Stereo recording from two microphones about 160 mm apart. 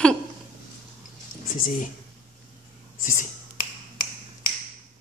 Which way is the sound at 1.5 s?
55° left (ahead or behind).